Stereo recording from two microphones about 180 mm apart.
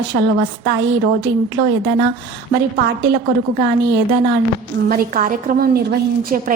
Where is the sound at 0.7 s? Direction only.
70° right (ahead or behind).